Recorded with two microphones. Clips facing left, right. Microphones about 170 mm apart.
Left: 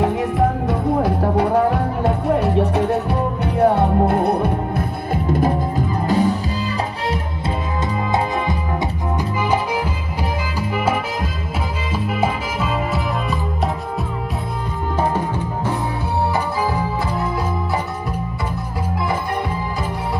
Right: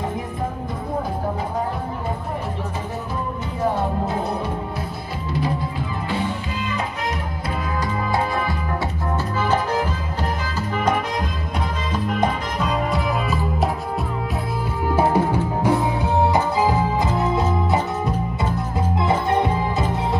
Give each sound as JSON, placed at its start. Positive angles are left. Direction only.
{"t": 0.0, "sound": "music", "side_deg": 75}
{"t": 9.5, "sound": "music", "side_deg": 10}
{"t": 15.0, "sound": "music", "side_deg": -10}
{"t": 17.4, "sound": "organ", "side_deg": -20}
{"t": 18.9, "sound": "music", "side_deg": -25}